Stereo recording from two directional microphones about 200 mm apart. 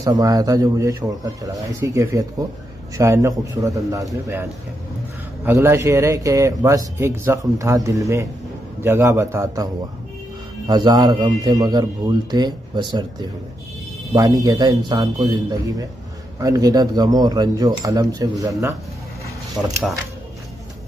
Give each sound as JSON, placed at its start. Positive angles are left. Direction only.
{"t": 0.0, "sound": "a man's voice", "side_deg": -15}
{"t": 10.7, "sound": "speech", "side_deg": -20}
{"t": 19.6, "sound": "speech", "side_deg": -5}